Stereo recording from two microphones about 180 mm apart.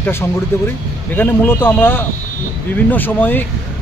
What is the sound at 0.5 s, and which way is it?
Speech, 15° left (ahead or behind).